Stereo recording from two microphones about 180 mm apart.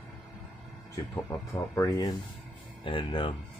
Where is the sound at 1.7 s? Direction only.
20° left (ahead or behind).